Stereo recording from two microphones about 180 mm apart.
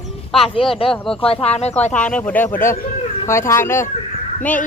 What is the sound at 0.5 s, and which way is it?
Speech, 30° left (ahead or behind).